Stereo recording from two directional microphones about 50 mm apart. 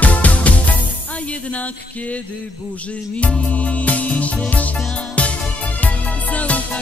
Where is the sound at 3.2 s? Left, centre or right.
Left.